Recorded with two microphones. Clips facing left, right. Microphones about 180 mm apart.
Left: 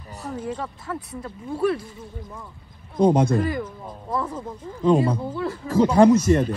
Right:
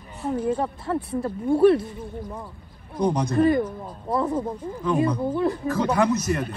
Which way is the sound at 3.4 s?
30° right (ahead or behind).